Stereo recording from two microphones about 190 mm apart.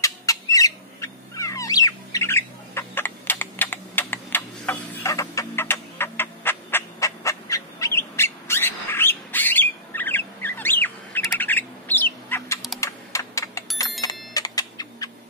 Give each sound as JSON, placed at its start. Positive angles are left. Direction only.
{"t": 0.0, "sound": "bird", "side_deg": 15}
{"t": 12.8, "sound": "computer keyboard", "side_deg": 15}
{"t": 14.0, "sound": "clock", "side_deg": 20}